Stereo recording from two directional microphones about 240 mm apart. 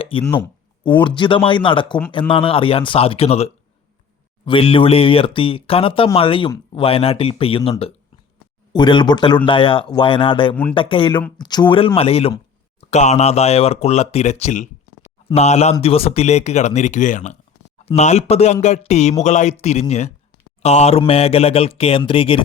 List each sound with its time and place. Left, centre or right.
0.0 s a sound: left
0.9 s speech: centre
10.5 s speech: centre
10.8 s speech: left
20.6 s mantra: left
21.1 s speech: left